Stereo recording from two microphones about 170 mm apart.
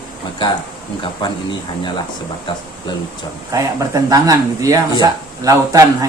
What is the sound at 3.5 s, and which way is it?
Speech, 20° right (ahead or behind).